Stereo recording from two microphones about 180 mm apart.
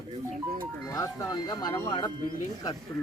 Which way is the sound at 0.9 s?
20° left (ahead or behind).